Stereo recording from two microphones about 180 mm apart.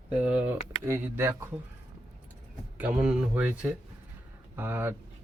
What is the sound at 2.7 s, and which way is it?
Speech, 10° right (ahead or behind).